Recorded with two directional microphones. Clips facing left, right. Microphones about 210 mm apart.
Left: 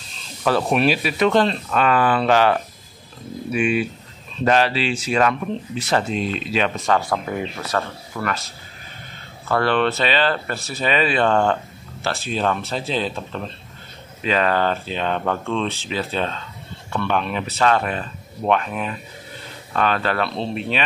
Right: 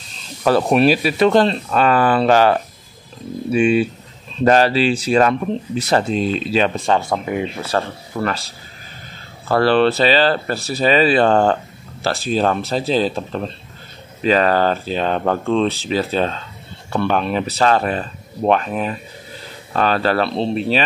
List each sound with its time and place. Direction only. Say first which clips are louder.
0.4 s speech: right 4 dB; 40° right (ahead or behind)
3.5 s speech: right 5 dB; 30° right (ahead or behind)
4.5 s speech: right 5 dB; 40° right (ahead or behind)